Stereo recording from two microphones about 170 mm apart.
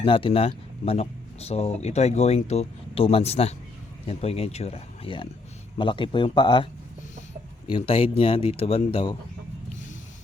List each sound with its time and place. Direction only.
0.0 s speech: 30° left (ahead or behind)
7.9 s speech: 35° left (ahead or behind)